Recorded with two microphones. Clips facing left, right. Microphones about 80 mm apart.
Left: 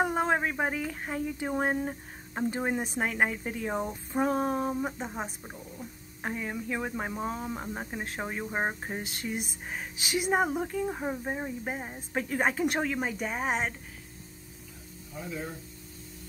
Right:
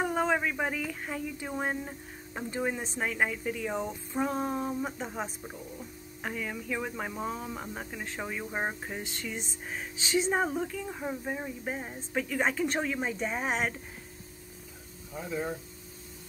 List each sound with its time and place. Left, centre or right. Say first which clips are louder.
0.2 s speech: left 1 dB; left
5.0 s speech: even; centre
6.2 s speech: left 2 dB; left
9.0 s speech: left 3 dB; left
10.3 s speech: left 2 dB; centre
10.6 s speech: left 4 dB; left
11.0 s speech: left 2 dB; left
12.2 s speech: left 1 dB; left
12.9 s speech: even; centre
15.1 s speech: right 3 dB; centre